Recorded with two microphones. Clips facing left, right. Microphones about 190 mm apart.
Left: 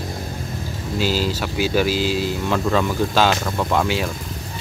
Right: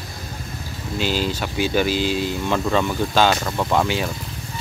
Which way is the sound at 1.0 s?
5° left (ahead or behind).